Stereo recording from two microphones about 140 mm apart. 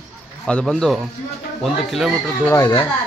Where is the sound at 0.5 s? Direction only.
5° left (ahead or behind).